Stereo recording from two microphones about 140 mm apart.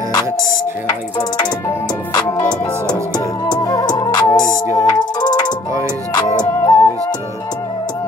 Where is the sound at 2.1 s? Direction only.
30° left (ahead or behind).